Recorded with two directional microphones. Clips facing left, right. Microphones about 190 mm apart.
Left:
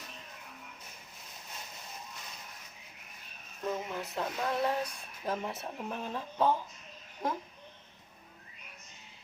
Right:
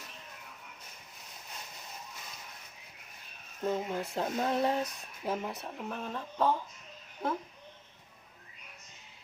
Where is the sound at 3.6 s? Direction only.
30° right (ahead or behind).